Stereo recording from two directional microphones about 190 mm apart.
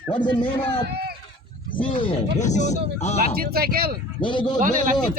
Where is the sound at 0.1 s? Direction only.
25° left (ahead or behind).